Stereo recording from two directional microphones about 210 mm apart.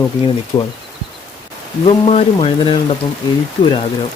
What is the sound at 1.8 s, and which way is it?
Speech, 30° left (ahead or behind).